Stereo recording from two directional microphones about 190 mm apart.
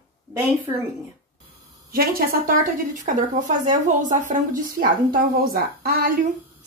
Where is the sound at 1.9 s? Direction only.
50° right (ahead or behind).